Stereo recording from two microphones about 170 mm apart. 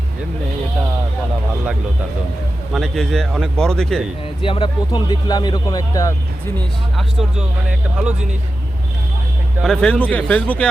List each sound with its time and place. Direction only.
2.7 s speech: centre (ahead or behind)
4.4 s speech: 30° left (ahead or behind)
6.9 s speech: centre (ahead or behind)
9.6 s speech: 5° left (ahead or behind)